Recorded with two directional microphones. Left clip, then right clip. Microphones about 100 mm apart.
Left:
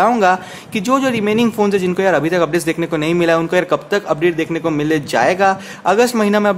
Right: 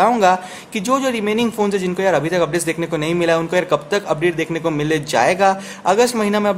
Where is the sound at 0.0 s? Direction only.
20° left (ahead or behind).